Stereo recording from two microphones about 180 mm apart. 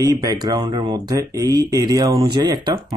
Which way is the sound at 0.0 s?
20° right (ahead or behind).